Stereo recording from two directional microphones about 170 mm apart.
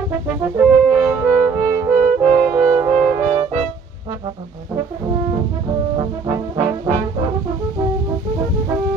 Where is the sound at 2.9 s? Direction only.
30° right (ahead or behind).